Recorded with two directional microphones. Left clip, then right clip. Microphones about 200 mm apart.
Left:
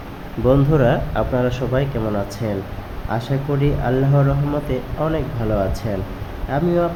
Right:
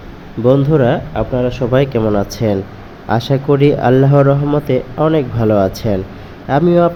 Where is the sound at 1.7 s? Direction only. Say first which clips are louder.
Right 8 dB; 30° right (ahead or behind).